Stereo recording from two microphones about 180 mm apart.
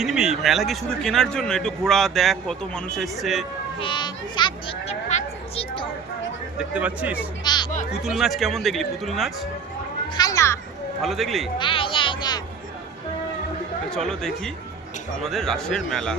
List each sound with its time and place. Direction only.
0.0 s a man's voice: centre (ahead or behind)
3.8 s speech: 25° left (ahead or behind)
5.0 s a sound: 35° left (ahead or behind)
6.6 s speech: 10° right (ahead or behind)
7.4 s speech: 25° left (ahead or behind)
7.9 s a man's voice: centre (ahead or behind)
10.2 s a child's voice: 20° left (ahead or behind)
11.0 s a man's voice: centre (ahead or behind)
11.5 s speech: 30° left (ahead or behind)
13.9 s a man's voice: 5° left (ahead or behind)